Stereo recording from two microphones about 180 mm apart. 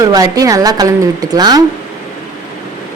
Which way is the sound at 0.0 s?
20° right (ahead or behind).